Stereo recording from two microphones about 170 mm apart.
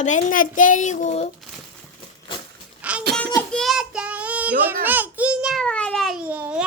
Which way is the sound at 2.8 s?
5° right (ahead or behind).